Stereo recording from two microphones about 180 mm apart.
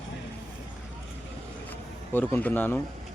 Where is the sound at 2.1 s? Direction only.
10° left (ahead or behind).